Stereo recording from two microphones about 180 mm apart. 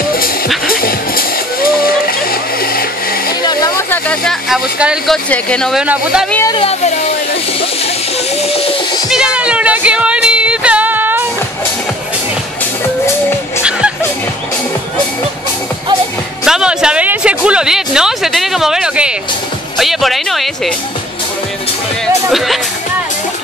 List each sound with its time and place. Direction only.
0.7 s music: 55° left (ahead or behind)
2.6 s a sound: 55° left (ahead or behind)
3.4 s speech: 15° left (ahead or behind); by 6.2 s 5° right (ahead or behind)
6.5 s speech: 35° left (ahead or behind)
9.1 s speech: 5° right (ahead or behind)
13.7 s music: 5° right (ahead or behind)
16.4 s speech: 5° right (ahead or behind)
22.3 s speech: centre (ahead or behind)